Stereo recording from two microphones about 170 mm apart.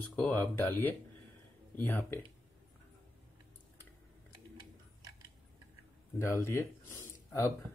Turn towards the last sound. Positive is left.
turn(degrees=15)  # may be behind; listen again after turning